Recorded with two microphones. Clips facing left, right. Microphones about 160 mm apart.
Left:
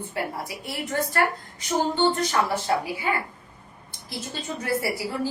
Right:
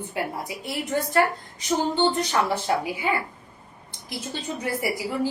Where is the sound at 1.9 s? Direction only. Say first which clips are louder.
Left 1 dB; 20° right (ahead or behind).